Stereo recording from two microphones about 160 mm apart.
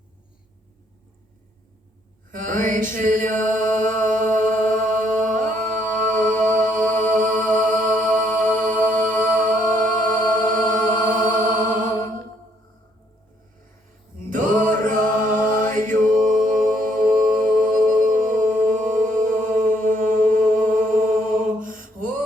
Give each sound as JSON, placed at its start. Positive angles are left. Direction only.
{"t": 2.3, "sound": "mantra", "side_deg": -55}
{"t": 3.0, "sound": "chant", "side_deg": -55}
{"t": 7.0, "sound": "music", "side_deg": -55}
{"t": 14.3, "sound": "mantra", "side_deg": -55}
{"t": 15.4, "sound": "music", "side_deg": -55}